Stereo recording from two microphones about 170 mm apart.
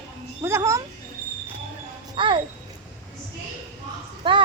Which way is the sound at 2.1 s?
30° right (ahead or behind).